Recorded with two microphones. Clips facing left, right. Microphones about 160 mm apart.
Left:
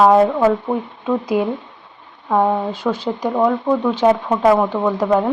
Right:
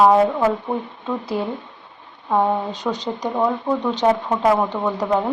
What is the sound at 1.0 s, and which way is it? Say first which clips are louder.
Speech: left 7 dB; 15° left (ahead or behind).